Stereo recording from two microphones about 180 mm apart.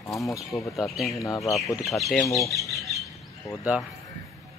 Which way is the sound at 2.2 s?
20° left (ahead or behind).